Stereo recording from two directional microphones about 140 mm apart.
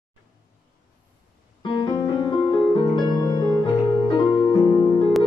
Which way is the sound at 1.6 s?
35° left (ahead or behind).